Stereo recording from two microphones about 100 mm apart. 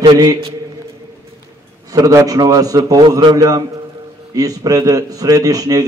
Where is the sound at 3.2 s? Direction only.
50° right (ahead or behind).